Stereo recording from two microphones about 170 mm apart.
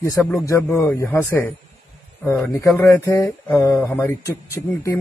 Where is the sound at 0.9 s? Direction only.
15° left (ahead or behind).